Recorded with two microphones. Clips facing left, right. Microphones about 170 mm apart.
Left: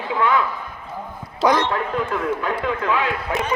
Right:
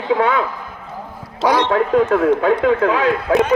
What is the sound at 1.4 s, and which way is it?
Speech, 10° right (ahead or behind).